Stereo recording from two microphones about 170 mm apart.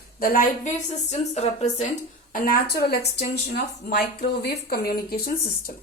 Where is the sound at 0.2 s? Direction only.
55° left (ahead or behind).